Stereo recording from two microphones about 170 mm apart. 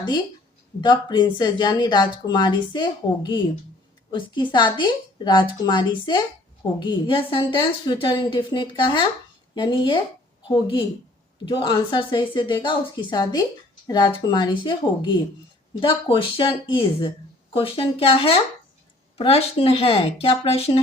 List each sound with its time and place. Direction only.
0.8 s a woman's voice: 25° left (ahead or behind)